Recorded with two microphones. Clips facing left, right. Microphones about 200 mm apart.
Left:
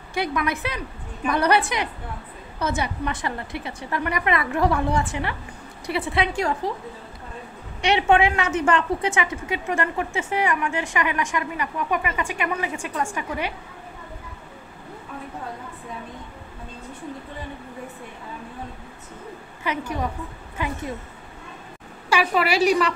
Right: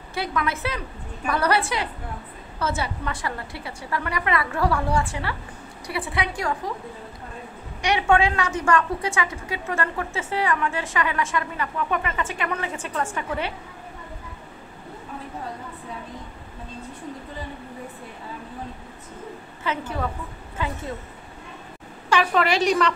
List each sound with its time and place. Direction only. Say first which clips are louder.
0.1 s a woman's voice: left 2 dB; 15° left (ahead or behind)
7.8 s a woman's voice: left 2 dB; 20° left (ahead or behind)
19.7 s a woman's voice: left 1 dB; 15° left (ahead or behind)
22.1 s a woman's voice: even; 10° left (ahead or behind)